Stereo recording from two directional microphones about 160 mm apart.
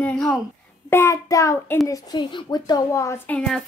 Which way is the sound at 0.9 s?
20° left (ahead or behind).